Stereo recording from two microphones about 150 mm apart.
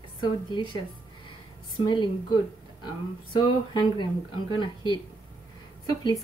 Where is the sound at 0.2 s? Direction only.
30° left (ahead or behind).